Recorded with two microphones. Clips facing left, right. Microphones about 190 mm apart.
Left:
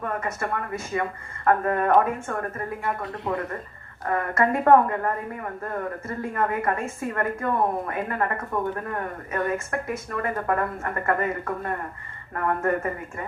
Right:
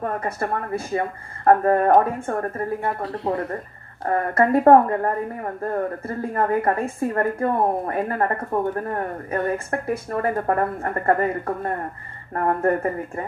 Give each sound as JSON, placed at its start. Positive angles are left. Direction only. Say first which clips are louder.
{"t": 0.0, "sound": "speech", "louder": "right 3 dB", "side_deg": -35}